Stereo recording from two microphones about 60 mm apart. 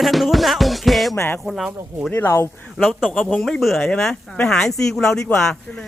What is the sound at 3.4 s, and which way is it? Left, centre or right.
Music, centre.